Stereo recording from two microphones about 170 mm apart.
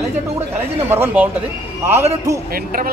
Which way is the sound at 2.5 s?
60° right (ahead or behind).